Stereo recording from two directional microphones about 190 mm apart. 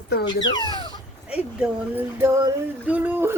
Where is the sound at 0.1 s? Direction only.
60° left (ahead or behind).